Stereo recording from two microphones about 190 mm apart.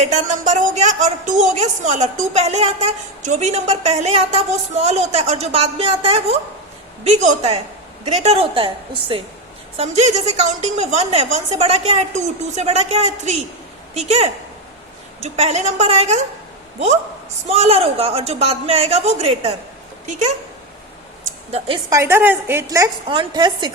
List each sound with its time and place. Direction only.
0.0 s a woman's voice: 40° right (ahead or behind)
17.4 s a woman's voice: 35° right (ahead or behind)
21.8 s a woman's voice: 15° right (ahead or behind)